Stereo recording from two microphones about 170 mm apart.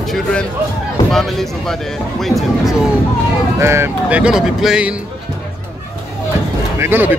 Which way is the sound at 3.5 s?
15° right (ahead or behind).